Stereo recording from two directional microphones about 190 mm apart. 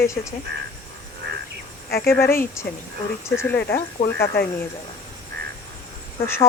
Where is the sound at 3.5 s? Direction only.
60° left (ahead or behind).